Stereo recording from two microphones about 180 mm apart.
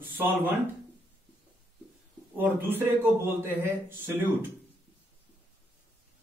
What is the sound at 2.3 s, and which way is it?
Speech, 10° right (ahead or behind).